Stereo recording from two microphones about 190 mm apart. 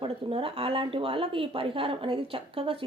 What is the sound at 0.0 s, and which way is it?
A woman's voice, 30° right (ahead or behind).